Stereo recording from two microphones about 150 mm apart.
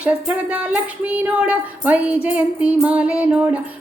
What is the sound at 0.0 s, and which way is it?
Music, 10° right (ahead or behind).